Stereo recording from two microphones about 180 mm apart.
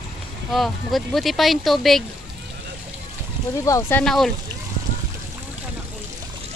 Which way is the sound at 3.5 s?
15° left (ahead or behind).